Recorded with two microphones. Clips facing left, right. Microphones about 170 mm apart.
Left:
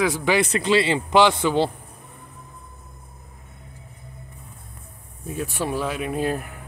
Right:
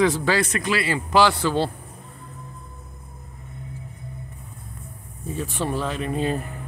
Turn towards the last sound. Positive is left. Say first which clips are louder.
# even
turn(degrees=5)  # may be behind; listen again after turning